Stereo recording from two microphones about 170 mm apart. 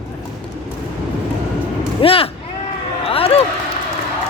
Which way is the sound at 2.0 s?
35° left (ahead or behind).